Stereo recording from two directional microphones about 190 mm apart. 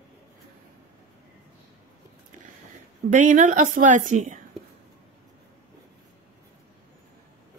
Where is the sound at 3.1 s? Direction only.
40° right (ahead or behind).